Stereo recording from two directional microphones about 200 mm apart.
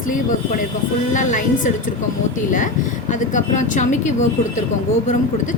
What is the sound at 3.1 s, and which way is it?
A woman's voice, 40° left (ahead or behind).